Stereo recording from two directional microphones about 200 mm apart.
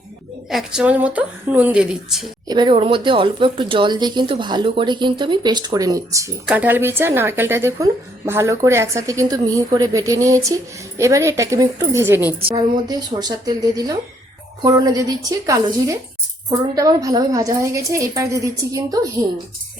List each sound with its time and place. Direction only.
0.5 s a woman's voice: 5° right (ahead or behind)
2.5 s a woman's voice: 25° right (ahead or behind)